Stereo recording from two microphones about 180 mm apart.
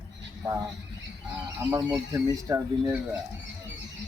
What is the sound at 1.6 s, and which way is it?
Speech, 15° right (ahead or behind).